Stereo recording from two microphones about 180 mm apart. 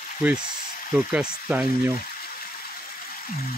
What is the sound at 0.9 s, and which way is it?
Speech, 5° right (ahead or behind).